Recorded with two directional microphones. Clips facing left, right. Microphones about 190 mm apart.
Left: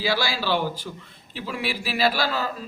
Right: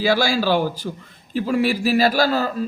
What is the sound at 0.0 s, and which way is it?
A man's voice, 50° right (ahead or behind).